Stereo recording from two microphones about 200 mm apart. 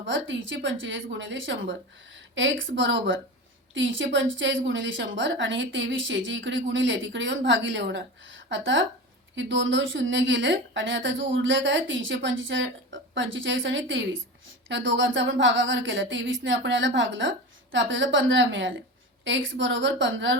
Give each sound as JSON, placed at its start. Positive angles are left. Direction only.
{"t": 0.0, "sound": "a woman's voice", "side_deg": -70}